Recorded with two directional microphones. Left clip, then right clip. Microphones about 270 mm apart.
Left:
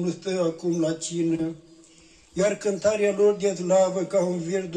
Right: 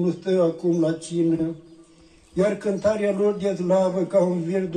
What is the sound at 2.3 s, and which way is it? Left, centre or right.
A man's voice, left.